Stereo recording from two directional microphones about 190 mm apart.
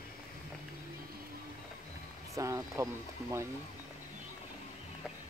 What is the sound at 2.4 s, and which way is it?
Speech, 15° right (ahead or behind).